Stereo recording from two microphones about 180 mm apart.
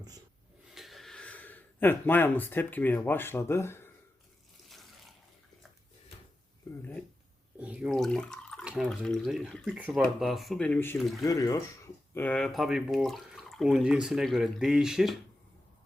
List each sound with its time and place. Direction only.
0.7 s speech: centre (ahead or behind)
4.7 s water: centre (ahead or behind)
7.6 s speech: 5° right (ahead or behind); by 11.6 s 20° left (ahead or behind)
12.1 s speech: 10° left (ahead or behind)